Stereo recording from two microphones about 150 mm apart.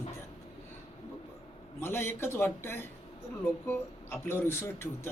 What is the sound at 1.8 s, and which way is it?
Speech, 15° left (ahead or behind).